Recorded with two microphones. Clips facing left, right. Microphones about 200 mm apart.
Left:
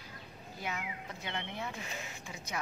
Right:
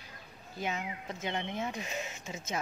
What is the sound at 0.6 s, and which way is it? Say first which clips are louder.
Speech: right 4 dB; 20° right (ahead or behind).